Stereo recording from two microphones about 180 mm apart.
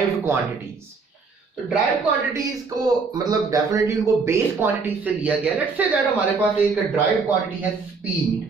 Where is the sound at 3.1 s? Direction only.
20° right (ahead or behind).